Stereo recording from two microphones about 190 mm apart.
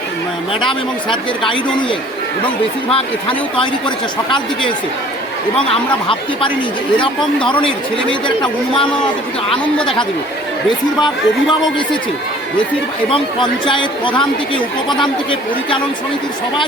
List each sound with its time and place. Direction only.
0.7 s speech: 25° left (ahead or behind)
8.4 s speech: 25° left (ahead or behind)
13.1 s speech: 25° left (ahead or behind)